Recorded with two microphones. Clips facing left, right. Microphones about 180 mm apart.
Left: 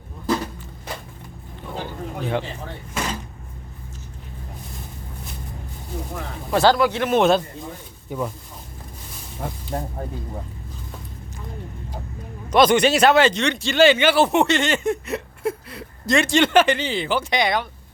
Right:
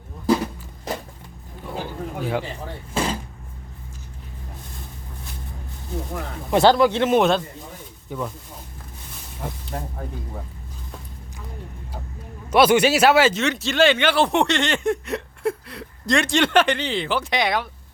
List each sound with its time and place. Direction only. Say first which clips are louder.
1.6 s a sound: right 1 dB; 10° right (ahead or behind)
3.0 s vehicle: right 4 dB; 30° right (ahead or behind)
6.5 s speech: right 2 dB; 20° right (ahead or behind)
7.2 s speech: left 2 dB; 5° left (ahead or behind)
9.7 s speech: left 4 dB; 30° left (ahead or behind)
12.5 s speech: even; 10° right (ahead or behind)